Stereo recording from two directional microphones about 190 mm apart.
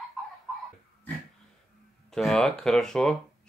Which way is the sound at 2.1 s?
Centre (ahead or behind).